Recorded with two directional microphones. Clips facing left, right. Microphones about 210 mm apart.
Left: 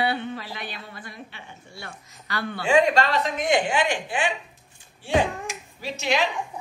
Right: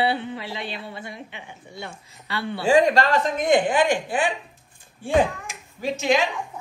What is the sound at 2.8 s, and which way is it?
A woman's voice, 45° right (ahead or behind).